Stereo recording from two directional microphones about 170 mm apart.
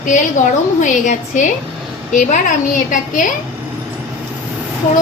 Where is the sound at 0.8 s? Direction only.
45° left (ahead or behind).